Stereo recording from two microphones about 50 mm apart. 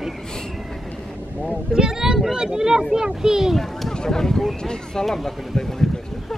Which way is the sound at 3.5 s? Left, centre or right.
Centre.